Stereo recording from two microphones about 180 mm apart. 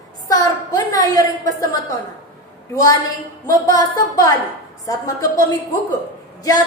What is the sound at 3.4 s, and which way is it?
A woman's voice, 20° left (ahead or behind).